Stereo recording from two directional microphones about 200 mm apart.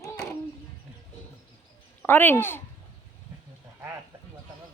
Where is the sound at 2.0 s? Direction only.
10° left (ahead or behind).